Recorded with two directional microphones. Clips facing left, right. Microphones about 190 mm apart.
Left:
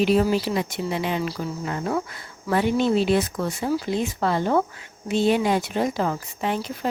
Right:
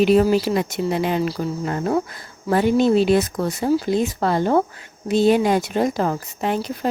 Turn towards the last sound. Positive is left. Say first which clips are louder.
# right 3 dB
turn(degrees=-40)  # may be behind; listen again after turning